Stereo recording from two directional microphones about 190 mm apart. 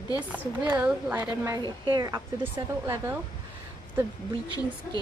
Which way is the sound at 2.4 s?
10° right (ahead or behind).